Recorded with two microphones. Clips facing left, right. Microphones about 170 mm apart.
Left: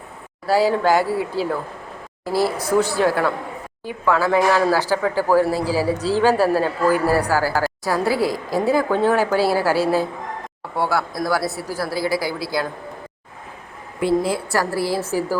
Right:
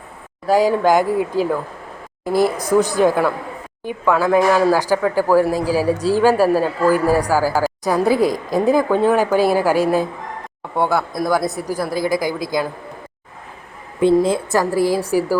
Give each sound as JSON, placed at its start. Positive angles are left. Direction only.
{"t": 0.4, "sound": "speech", "side_deg": -15}
{"t": 14.0, "sound": "speech", "side_deg": -20}